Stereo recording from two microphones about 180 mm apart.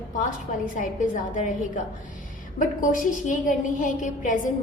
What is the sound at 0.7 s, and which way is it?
A woman's voice, 45° left (ahead or behind).